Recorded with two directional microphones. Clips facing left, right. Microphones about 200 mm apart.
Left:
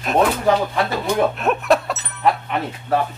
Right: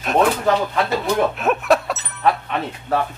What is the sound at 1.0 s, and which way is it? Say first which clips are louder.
Speech: even; centre (ahead or behind).